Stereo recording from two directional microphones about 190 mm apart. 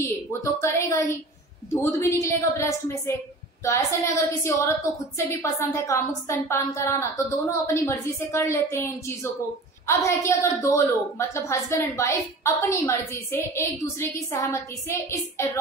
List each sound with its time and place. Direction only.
0.0 s a woman's voice: 15° left (ahead or behind)